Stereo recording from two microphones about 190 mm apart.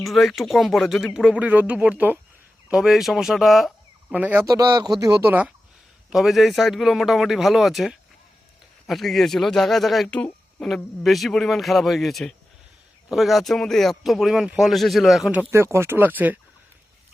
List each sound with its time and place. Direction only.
0.0 s speech: centre (ahead or behind)
4.5 s speech: 20° right (ahead or behind)